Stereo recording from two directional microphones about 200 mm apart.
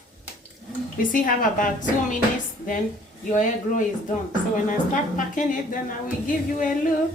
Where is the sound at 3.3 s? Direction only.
40° left (ahead or behind).